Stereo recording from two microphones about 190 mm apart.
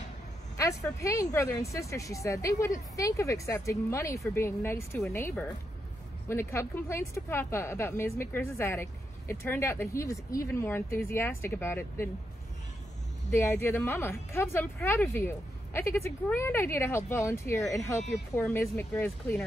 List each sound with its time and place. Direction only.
0.6 s a woman's voice: 15° left (ahead or behind)
6.2 s a woman's voice: 15° left (ahead or behind)
13.3 s a woman's voice: 15° left (ahead or behind)